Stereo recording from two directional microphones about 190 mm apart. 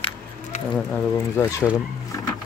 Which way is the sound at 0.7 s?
5° left (ahead or behind).